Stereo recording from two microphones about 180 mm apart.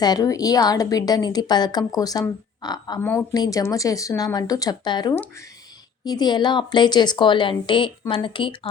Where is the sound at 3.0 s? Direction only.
15° left (ahead or behind).